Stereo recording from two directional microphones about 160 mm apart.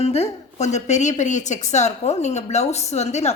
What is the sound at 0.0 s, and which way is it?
A man's voice, 40° left (ahead or behind).